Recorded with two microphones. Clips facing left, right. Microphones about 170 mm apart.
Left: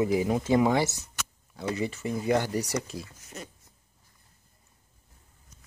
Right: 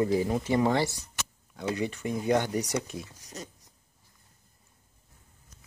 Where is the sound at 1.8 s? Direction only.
5° left (ahead or behind).